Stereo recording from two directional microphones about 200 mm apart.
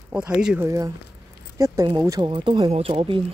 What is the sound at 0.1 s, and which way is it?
Speech, 5° right (ahead or behind).